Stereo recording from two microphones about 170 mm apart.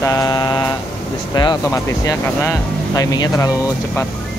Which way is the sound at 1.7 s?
15° left (ahead or behind).